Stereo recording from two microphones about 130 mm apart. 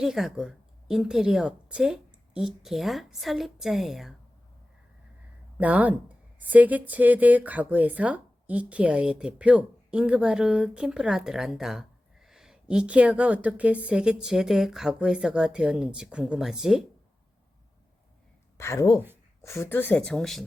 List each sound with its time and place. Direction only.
0.0 s a woman's voice: centre (ahead or behind)
5.5 s speech: 10° right (ahead or behind)
18.5 s a woman's voice: 20° left (ahead or behind); by 20.4 s 5° left (ahead or behind)